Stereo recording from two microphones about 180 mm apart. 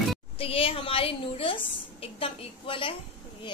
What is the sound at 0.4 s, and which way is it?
A woman's voice, 30° left (ahead or behind).